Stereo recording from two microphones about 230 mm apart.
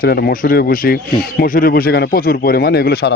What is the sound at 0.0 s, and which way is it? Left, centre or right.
Speech, left.